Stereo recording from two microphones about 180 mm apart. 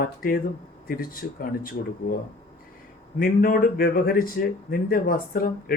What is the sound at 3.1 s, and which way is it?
Speech, 55° left (ahead or behind).